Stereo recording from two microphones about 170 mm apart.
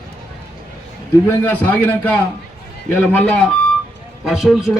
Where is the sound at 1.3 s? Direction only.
10° left (ahead or behind).